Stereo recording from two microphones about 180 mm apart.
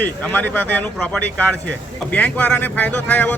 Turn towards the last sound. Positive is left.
turn(degrees=10)  # may be behind; listen again after turning